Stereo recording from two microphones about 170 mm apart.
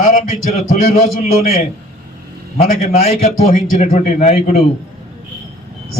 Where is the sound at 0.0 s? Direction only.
50° left (ahead or behind).